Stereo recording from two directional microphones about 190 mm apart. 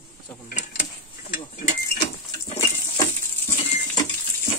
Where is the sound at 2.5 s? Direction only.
15° left (ahead or behind).